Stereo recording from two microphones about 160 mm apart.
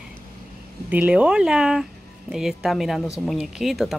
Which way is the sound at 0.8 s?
10° right (ahead or behind).